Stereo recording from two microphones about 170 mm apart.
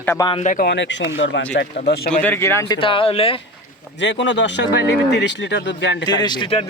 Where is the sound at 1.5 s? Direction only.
70° left (ahead or behind).